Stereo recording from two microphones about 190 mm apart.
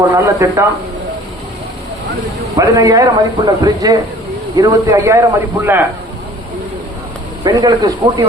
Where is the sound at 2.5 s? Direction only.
20° right (ahead or behind).